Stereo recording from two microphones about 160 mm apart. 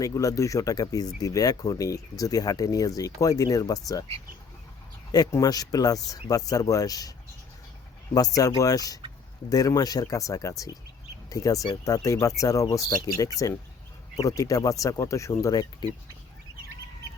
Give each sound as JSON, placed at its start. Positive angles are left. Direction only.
{"t": 0.0, "sound": "speech", "side_deg": 20}
{"t": 5.1, "sound": "speech", "side_deg": 20}
{"t": 8.1, "sound": "speech", "side_deg": 20}